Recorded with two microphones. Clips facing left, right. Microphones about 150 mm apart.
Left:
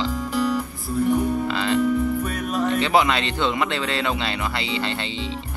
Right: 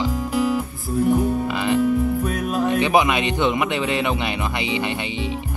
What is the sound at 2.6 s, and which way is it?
Speech, 15° right (ahead or behind).